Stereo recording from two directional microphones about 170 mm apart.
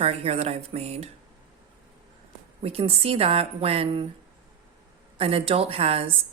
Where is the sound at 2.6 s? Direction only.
35° right (ahead or behind).